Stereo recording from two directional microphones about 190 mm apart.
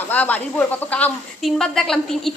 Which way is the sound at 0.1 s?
10° left (ahead or behind).